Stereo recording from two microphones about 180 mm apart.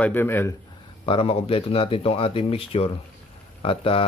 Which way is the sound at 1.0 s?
30° left (ahead or behind).